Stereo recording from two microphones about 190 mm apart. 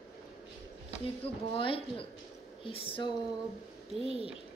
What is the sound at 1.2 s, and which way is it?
A woman's voice, 30° left (ahead or behind).